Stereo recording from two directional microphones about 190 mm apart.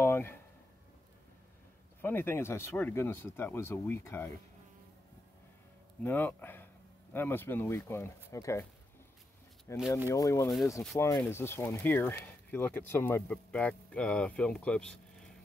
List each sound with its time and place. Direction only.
0.0 s a sound: 10° left (ahead or behind)
2.0 s speech: 10° left (ahead or behind)
6.0 s speech: 10° left (ahead or behind)
9.7 s speech: 15° left (ahead or behind)